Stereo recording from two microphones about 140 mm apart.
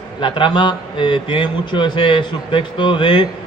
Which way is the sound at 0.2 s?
35° left (ahead or behind).